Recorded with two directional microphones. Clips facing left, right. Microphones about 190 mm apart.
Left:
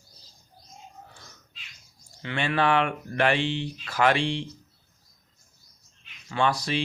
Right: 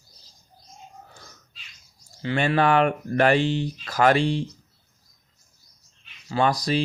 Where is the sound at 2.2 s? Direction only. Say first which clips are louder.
Right 4 dB; 35° right (ahead or behind).